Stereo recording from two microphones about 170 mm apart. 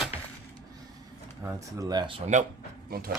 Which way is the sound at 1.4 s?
20° right (ahead or behind).